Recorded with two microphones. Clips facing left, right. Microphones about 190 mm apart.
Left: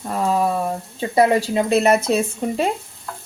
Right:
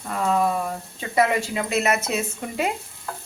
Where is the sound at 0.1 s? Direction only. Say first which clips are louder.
Left 2 dB; 30° left (ahead or behind).